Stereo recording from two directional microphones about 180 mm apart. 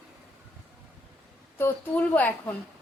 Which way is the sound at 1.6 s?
10° left (ahead or behind).